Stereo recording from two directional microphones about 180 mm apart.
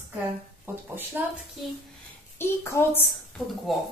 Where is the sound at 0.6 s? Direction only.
10° right (ahead or behind).